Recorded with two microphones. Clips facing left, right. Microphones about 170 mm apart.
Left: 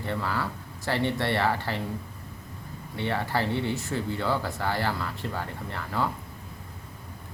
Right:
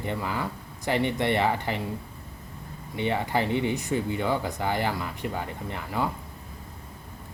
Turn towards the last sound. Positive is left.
turn(degrees=-15)  # may be behind; listen again after turning